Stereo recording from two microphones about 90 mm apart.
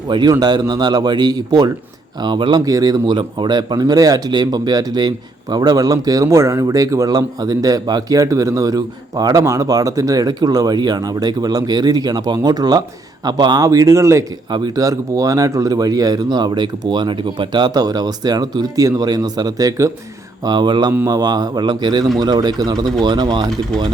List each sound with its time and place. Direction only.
0.1 s speech: 50° right (ahead or behind)
2.6 s speech: 40° right (ahead or behind)
14.5 s speech: 55° right (ahead or behind)
14.8 s speech: 40° right (ahead or behind)
20.4 s speech: 55° right (ahead or behind)